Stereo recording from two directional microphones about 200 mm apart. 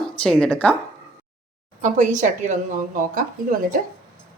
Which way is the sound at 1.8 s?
40° right (ahead or behind).